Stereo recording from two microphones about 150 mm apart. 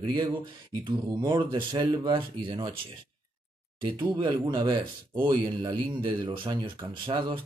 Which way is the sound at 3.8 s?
30° right (ahead or behind).